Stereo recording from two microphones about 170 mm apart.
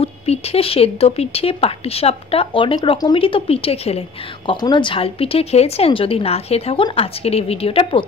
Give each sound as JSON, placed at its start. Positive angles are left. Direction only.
{"t": 0.0, "sound": "speech", "side_deg": 35}
{"t": 4.5, "sound": "speech", "side_deg": 25}